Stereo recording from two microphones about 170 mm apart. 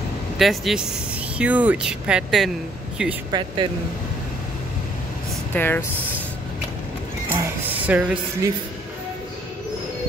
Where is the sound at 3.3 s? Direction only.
25° right (ahead or behind).